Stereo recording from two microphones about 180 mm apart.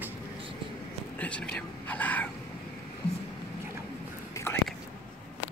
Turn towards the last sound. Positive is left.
turn(degrees=10)  # may be behind; listen again after turning